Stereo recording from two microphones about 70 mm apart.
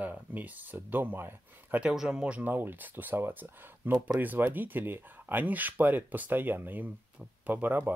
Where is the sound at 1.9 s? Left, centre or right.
Centre.